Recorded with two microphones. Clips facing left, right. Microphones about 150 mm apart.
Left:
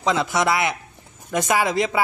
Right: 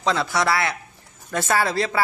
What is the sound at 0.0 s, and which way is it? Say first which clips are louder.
Speech: left 1 dB; 20° left (ahead or behind).